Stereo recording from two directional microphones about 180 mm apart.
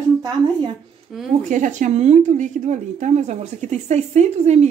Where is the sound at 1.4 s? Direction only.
45° right (ahead or behind).